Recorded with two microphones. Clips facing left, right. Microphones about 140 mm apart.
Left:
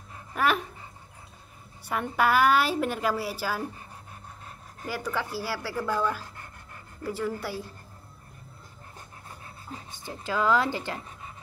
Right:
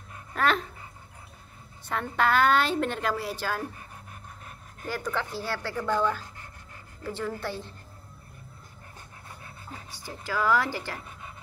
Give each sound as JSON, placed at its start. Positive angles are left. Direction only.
{"t": 0.3, "sound": "speech", "side_deg": 10}
{"t": 1.9, "sound": "a woman's voice", "side_deg": 10}
{"t": 4.8, "sound": "a woman's voice", "side_deg": 10}
{"t": 9.8, "sound": "a woman's voice", "side_deg": 20}